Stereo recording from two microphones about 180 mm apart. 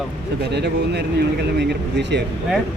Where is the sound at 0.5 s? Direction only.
70° right (ahead or behind).